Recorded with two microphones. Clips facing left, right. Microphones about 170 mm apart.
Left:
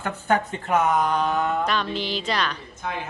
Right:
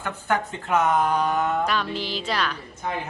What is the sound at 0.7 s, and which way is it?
A woman's voice, centre (ahead or behind).